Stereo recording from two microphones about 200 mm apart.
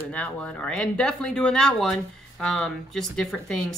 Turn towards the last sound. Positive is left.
turn(degrees=0)  # may be behind; listen again after turning